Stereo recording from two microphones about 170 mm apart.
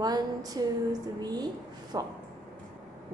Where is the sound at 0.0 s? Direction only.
25° right (ahead or behind).